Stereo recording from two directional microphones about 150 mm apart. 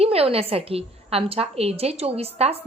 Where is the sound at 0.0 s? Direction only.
40° right (ahead or behind).